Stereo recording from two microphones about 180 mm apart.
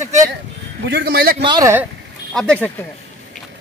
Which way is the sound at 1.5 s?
20° right (ahead or behind).